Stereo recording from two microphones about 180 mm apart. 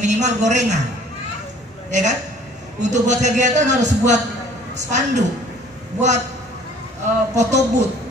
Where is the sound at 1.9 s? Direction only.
40° right (ahead or behind).